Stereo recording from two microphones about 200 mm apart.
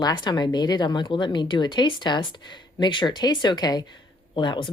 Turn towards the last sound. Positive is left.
turn(degrees=25)  # may be behind; listen again after turning